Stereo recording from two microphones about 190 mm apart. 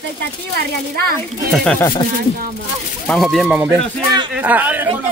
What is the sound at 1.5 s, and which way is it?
Speech, 10° left (ahead or behind).